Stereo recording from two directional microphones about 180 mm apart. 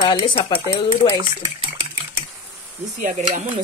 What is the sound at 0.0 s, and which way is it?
Speech, 25° left (ahead or behind).